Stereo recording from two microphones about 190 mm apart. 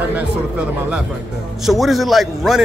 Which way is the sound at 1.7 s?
Centre (ahead or behind).